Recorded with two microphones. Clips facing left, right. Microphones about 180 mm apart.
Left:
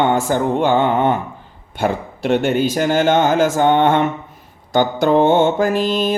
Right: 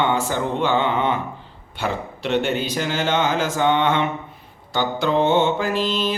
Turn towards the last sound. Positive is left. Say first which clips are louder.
# left 5 dB
turn(degrees=50)  # may be behind; listen again after turning